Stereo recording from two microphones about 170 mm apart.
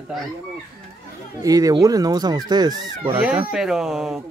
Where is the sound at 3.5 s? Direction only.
5° right (ahead or behind).